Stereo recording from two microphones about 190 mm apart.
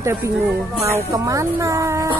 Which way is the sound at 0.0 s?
15° right (ahead or behind).